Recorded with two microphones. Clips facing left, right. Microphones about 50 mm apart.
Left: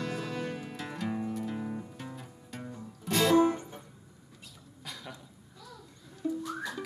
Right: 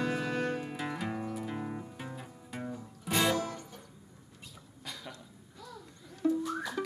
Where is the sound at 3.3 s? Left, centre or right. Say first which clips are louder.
Left 11 dB; left.